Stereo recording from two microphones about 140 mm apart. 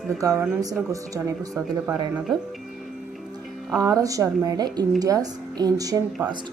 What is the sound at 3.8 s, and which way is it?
Speech, 25° right (ahead or behind).